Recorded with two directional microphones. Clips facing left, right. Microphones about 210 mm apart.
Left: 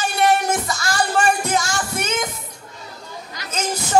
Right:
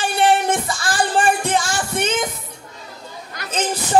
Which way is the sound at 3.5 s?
30° right (ahead or behind).